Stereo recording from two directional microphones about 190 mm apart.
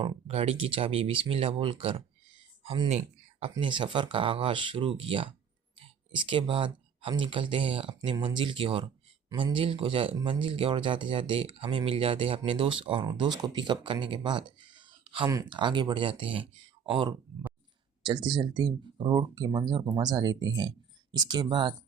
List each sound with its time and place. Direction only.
0.0 s speech: 30° right (ahead or behind)
15.0 s a sound: 25° right (ahead or behind)
15.3 s speech: 20° right (ahead or behind)